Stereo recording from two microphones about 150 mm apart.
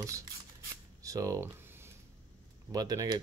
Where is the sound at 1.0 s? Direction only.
20° right (ahead or behind).